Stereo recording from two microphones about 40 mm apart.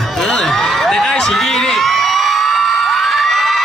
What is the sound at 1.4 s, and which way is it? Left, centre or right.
Crowd, centre.